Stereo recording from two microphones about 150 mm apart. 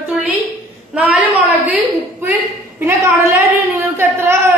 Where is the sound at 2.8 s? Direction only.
15° right (ahead or behind).